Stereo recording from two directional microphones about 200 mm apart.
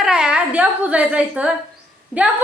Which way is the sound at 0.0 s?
5° right (ahead or behind).